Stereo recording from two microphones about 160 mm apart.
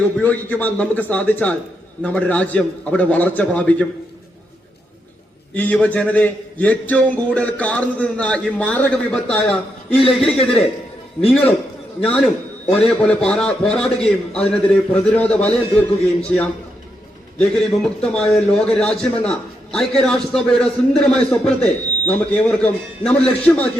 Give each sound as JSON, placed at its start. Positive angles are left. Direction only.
{"t": 0.2, "sound": "a man's voice", "side_deg": 10}
{"t": 5.5, "sound": "a man's voice", "side_deg": 10}
{"t": 10.0, "sound": "a man's voice", "side_deg": 35}
{"t": 10.2, "sound": "a man's voice", "side_deg": 5}
{"t": 12.0, "sound": "a man's voice", "side_deg": 5}
{"t": 17.5, "sound": "a man's voice", "side_deg": 5}